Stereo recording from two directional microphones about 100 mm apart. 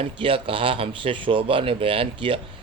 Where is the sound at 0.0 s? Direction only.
65° right (ahead or behind).